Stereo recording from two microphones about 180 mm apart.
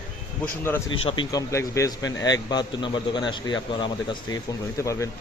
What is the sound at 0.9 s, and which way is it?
A man's voice, 25° left (ahead or behind).